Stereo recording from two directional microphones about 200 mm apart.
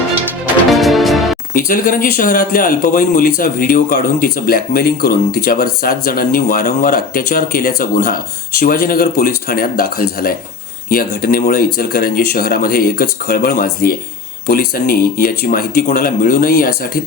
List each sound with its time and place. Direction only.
0.7 s music: centre (ahead or behind)
1.5 s speech: 45° left (ahead or behind)